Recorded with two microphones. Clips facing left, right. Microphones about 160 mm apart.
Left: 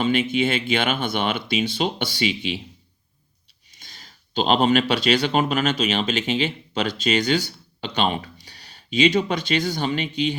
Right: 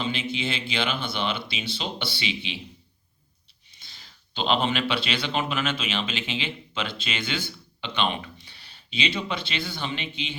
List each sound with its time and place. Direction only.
0.0 s speech: 50° left (ahead or behind)
3.8 s speech: 45° left (ahead or behind)